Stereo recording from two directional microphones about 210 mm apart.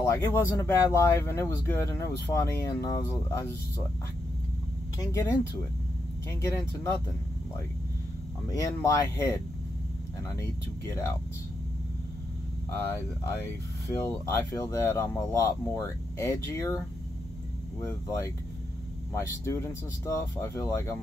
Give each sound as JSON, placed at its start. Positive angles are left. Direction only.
{"t": 0.0, "sound": "speech", "side_deg": 15}
{"t": 5.0, "sound": "speech", "side_deg": 15}
{"t": 6.4, "sound": "speech", "side_deg": 15}
{"t": 8.5, "sound": "speech", "side_deg": 15}
{"t": 13.8, "sound": "speech", "side_deg": 15}